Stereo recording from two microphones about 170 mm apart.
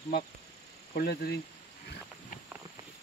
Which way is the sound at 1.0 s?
70° left (ahead or behind).